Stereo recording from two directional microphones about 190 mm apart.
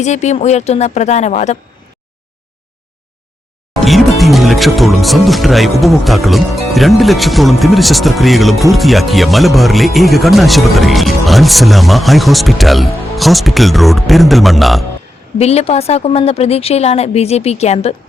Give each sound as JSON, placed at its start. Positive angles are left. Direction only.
{"t": 0.0, "sound": "a woman's voice", "side_deg": 40}
{"t": 3.8, "sound": "music", "side_deg": 0}
{"t": 4.2, "sound": "speech", "side_deg": 0}
{"t": 15.4, "sound": "a woman's voice", "side_deg": 35}